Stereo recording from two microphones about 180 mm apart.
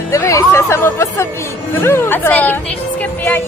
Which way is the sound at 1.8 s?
10° left (ahead or behind).